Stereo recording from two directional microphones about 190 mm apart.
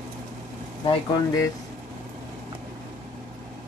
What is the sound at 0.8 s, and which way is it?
Speech, 20° left (ahead or behind).